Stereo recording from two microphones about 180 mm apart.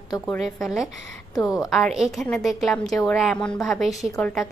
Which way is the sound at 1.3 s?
20° left (ahead or behind).